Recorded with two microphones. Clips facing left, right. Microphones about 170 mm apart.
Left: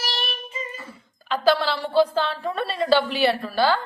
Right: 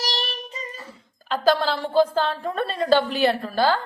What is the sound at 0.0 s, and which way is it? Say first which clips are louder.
Child singing: right 2 dB; 35° right (ahead or behind).